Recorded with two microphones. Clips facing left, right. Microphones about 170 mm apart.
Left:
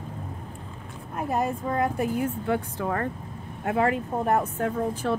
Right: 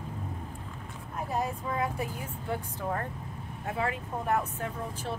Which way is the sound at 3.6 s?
65° left (ahead or behind).